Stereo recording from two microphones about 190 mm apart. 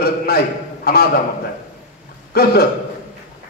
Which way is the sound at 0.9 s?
55° left (ahead or behind).